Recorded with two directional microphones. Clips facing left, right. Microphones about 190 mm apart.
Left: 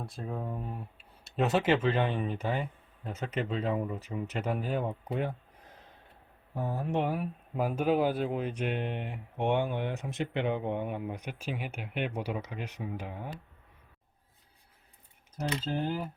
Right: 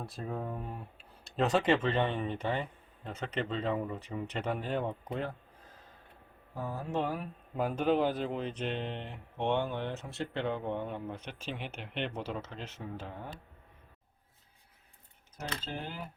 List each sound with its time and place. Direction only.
0.0 s speech: centre (ahead or behind)
6.5 s speech: 20° left (ahead or behind)